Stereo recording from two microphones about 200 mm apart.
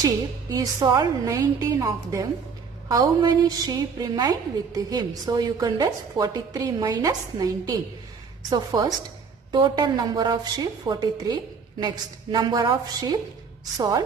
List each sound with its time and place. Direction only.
0.0 s a woman's voice: 20° right (ahead or behind)